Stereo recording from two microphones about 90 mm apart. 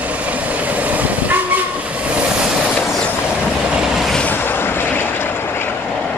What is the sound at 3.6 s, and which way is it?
Boat, 5° right (ahead or behind).